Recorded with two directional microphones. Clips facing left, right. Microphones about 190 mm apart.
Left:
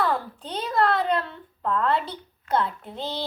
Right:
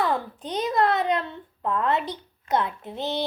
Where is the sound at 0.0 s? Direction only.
15° right (ahead or behind).